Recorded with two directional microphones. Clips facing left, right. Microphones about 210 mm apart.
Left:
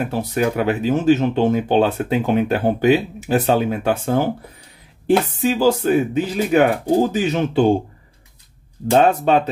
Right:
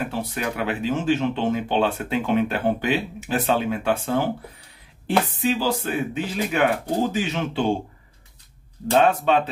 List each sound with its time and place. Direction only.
0.1 s speech: 40° left (ahead or behind)
9.0 s speech: 40° left (ahead or behind)